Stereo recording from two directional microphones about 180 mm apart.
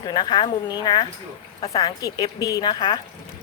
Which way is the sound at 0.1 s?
25° left (ahead or behind).